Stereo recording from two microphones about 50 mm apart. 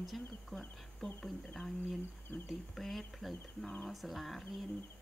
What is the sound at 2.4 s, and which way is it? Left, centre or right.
Speech, centre.